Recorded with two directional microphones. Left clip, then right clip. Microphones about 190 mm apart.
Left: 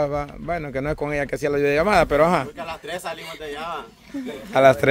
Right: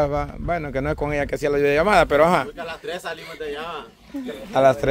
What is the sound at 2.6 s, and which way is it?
A man's voice, 30° left (ahead or behind).